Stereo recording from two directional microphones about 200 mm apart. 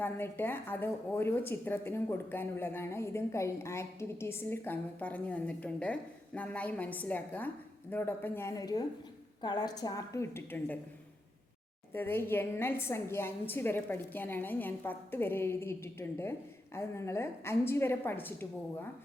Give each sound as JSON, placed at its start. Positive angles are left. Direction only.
{"t": 0.0, "sound": "a woman's voice", "side_deg": 10}
{"t": 11.9, "sound": "a woman's voice", "side_deg": 10}